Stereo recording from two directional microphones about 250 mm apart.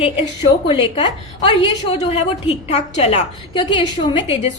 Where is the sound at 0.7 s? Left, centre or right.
Left.